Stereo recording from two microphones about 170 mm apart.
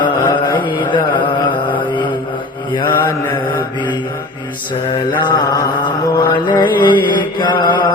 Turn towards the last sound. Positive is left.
turn(degrees=25)  # may be behind; listen again after turning